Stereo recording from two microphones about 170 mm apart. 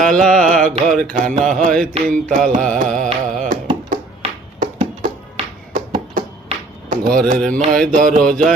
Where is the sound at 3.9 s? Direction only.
45° right (ahead or behind).